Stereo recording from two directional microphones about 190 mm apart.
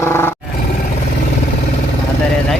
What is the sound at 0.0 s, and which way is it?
Roar, 10° left (ahead or behind).